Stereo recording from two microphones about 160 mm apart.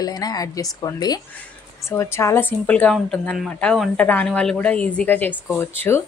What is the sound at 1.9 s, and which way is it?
Speech, 15° left (ahead or behind).